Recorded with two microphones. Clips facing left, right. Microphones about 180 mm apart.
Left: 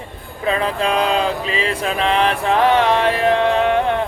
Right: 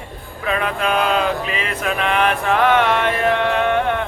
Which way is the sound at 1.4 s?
35° left (ahead or behind).